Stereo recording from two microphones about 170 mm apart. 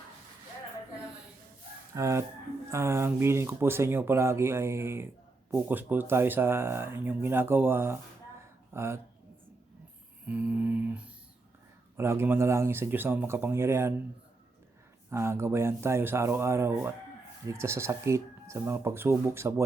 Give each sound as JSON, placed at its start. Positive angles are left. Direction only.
{"t": 2.0, "sound": "speech", "side_deg": -20}
{"t": 10.2, "sound": "a sound", "side_deg": -10}
{"t": 11.9, "sound": "speech", "side_deg": -15}
{"t": 15.1, "sound": "speech", "side_deg": -15}